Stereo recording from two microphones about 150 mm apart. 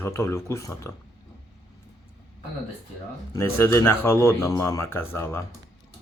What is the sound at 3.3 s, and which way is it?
Speech, 20° left (ahead or behind).